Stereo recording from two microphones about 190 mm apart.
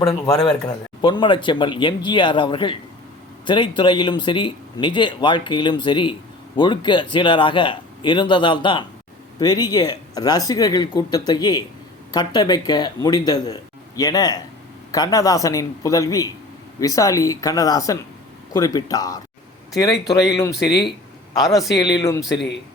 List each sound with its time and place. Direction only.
0.3 s speech: 5° left (ahead or behind)
1.0 s speech: 25° left (ahead or behind)
20.5 s speech: 60° left (ahead or behind)
21.3 s speech: 20° left (ahead or behind)
21.6 s speech: centre (ahead or behind)
22.0 s speech: 15° left (ahead or behind)